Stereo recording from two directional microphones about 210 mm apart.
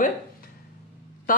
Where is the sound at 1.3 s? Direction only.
40° left (ahead or behind).